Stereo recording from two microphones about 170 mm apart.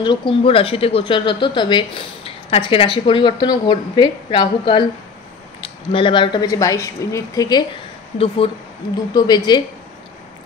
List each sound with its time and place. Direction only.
0.0 s speech: 30° left (ahead or behind)
9.1 s speech: 25° left (ahead or behind)